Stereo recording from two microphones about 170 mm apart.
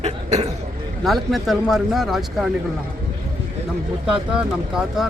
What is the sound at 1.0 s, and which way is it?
Speech, centre (ahead or behind).